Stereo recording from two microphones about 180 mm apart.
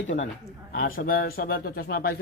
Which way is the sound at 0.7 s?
50° left (ahead or behind).